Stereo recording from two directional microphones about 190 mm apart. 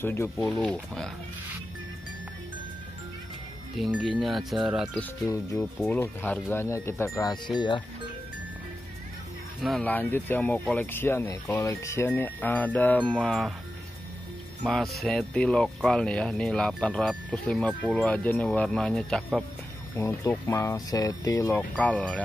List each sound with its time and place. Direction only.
0.0 s speech: 10° left (ahead or behind)
3.7 s speech: centre (ahead or behind)
5.2 s speech: 15° left (ahead or behind)
9.6 s speech: centre (ahead or behind)
14.6 s speech: centre (ahead or behind)